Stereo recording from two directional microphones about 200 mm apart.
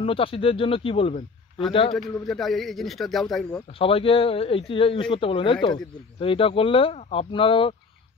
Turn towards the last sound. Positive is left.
turn(degrees=25)  # may be behind; listen again after turning